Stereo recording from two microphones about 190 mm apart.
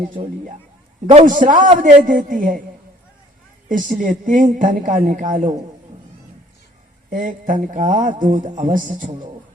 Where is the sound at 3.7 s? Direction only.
45° right (ahead or behind).